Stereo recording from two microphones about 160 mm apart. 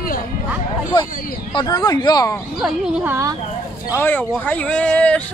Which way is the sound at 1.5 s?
25° left (ahead or behind).